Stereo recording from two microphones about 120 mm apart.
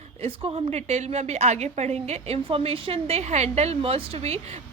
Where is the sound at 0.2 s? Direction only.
55° right (ahead or behind).